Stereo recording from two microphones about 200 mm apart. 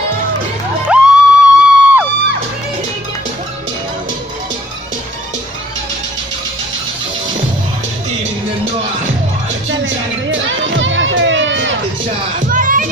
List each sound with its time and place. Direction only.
0.8 s music: 5° right (ahead or behind)
9.7 s music: 65° right (ahead or behind)
12.4 s music: 40° right (ahead or behind)